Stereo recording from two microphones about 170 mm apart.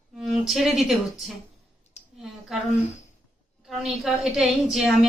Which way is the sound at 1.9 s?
40° left (ahead or behind).